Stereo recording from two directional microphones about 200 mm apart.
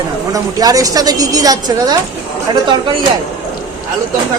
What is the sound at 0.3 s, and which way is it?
A woman's voice, 15° right (ahead or behind).